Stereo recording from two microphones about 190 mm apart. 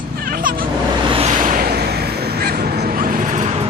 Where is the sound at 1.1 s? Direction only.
35° right (ahead or behind).